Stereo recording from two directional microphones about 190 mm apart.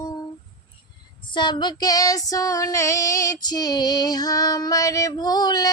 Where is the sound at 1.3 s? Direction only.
25° left (ahead or behind).